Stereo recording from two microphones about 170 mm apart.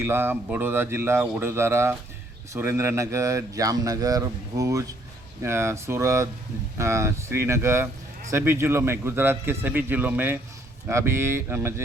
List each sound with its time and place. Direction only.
0.0 s speech: 15° right (ahead or behind)